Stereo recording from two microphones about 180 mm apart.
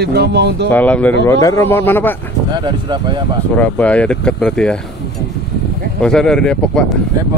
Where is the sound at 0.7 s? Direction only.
10° left (ahead or behind).